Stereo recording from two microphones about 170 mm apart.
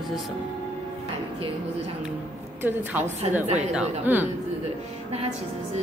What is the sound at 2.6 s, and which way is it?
A woman's voice, 10° right (ahead or behind).